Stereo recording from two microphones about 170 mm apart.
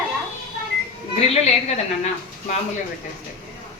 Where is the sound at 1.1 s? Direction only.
40° left (ahead or behind).